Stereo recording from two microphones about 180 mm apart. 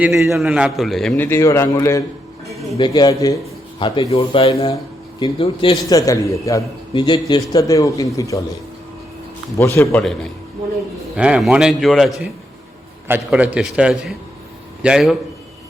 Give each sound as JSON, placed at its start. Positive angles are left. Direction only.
{"t": 0.3, "sound": "a man's voice", "side_deg": 0}
{"t": 2.5, "sound": "a sound", "side_deg": 0}
{"t": 2.7, "sound": "a man's voice", "side_deg": 25}
{"t": 5.7, "sound": "a man's voice", "side_deg": 20}
{"t": 9.6, "sound": "a man's voice", "side_deg": 15}
{"t": 11.2, "sound": "a man's voice", "side_deg": -5}